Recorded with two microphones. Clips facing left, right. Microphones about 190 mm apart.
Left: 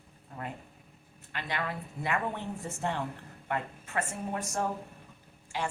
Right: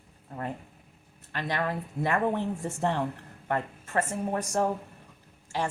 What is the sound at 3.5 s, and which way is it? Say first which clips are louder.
Speech: right 4 dB; 45° right (ahead or behind).